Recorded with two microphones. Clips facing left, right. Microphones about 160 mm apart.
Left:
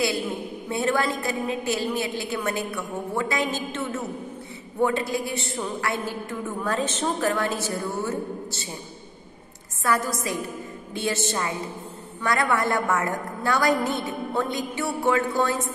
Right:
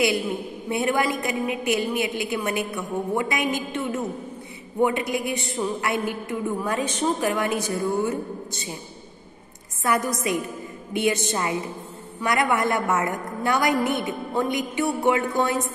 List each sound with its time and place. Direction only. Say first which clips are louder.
0.7 s a woman's voice: right 1 dB; 15° right (ahead or behind)
9.8 s a woman's voice: right 2 dB; 20° right (ahead or behind)